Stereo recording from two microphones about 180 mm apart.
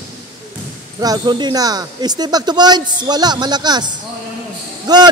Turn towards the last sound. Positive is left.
turn(degrees=-25)  # may be behind; listen again after turning